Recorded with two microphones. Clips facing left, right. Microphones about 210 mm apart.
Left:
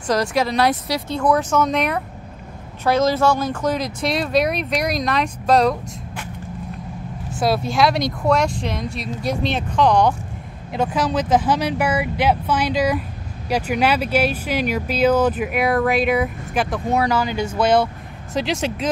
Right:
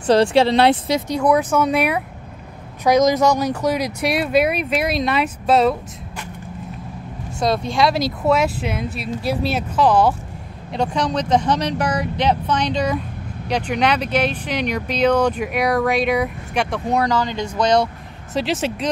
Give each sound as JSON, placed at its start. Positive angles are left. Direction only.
{"t": 0.0, "sound": "speech", "side_deg": -30}
{"t": 7.3, "sound": "speech", "side_deg": 5}